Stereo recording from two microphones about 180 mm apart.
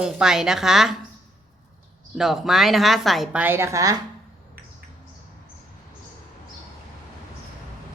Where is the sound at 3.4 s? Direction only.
15° right (ahead or behind).